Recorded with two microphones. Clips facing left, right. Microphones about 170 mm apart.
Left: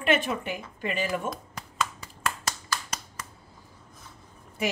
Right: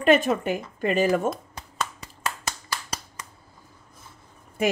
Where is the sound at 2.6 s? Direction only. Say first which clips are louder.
Even; 30° right (ahead or behind).